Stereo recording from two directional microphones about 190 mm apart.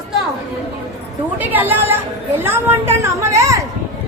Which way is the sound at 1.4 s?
10° right (ahead or behind).